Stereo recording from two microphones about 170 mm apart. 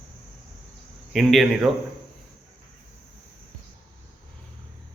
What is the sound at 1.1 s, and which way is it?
Speech, centre (ahead or behind).